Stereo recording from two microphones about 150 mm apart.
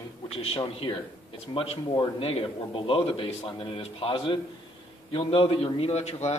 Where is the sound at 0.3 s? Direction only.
40° left (ahead or behind).